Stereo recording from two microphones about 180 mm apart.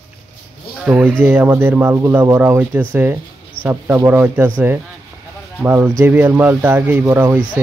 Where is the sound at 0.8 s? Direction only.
5° right (ahead or behind).